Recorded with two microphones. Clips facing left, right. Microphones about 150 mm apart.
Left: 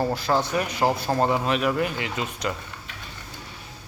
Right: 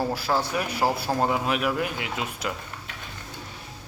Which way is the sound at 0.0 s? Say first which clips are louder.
Left 2 dB; 5° right (ahead or behind).